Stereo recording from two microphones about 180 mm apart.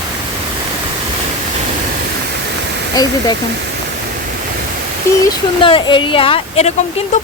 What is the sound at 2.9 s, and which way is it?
Speech, 20° left (ahead or behind).